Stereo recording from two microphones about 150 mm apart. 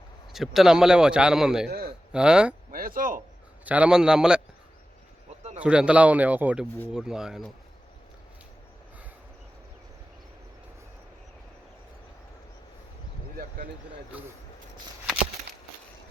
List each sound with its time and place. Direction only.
0.3 s speech: centre (ahead or behind)
1.6 s a man's voice: 90° right
2.1 s a man's voice: 5° right (ahead or behind)
2.7 s speech: 70° right (ahead or behind)
3.6 s speech: 10° right (ahead or behind)
5.5 s a man's voice: 5° right (ahead or behind)